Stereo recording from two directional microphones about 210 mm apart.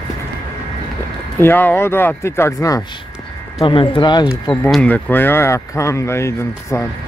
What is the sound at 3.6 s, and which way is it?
Speech, 25° left (ahead or behind).